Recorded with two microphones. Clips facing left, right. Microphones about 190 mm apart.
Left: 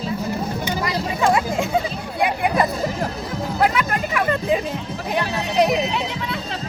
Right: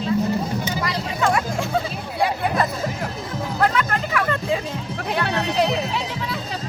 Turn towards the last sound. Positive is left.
turn(degrees=15)  # may be behind; listen again after turning